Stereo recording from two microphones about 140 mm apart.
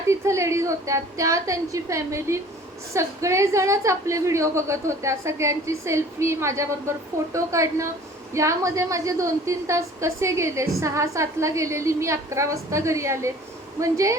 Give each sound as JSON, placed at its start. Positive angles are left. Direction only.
{"t": 0.1, "sound": "a woman's voice", "side_deg": -20}